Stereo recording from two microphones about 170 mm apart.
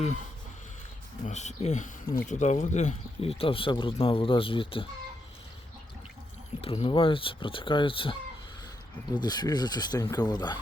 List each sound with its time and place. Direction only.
1.2 s speech: 40° left (ahead or behind)
6.6 s speech: 35° left (ahead or behind)
9.2 s speech: 25° left (ahead or behind)